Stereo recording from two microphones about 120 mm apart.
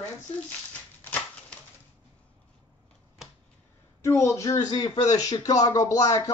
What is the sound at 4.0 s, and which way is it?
Speech, 25° left (ahead or behind).